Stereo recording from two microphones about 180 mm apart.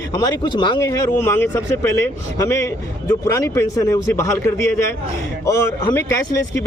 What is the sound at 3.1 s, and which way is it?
A man's voice, 15° left (ahead or behind).